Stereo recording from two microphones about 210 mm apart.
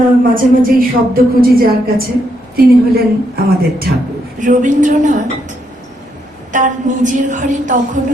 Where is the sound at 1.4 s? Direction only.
45° right (ahead or behind).